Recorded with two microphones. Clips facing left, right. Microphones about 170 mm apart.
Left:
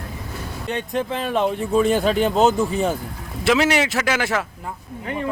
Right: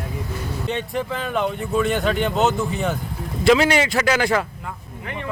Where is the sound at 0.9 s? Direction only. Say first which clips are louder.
Left 5 dB; 25° left (ahead or behind).